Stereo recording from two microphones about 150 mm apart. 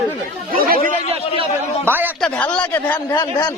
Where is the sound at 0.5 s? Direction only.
75° right (ahead or behind).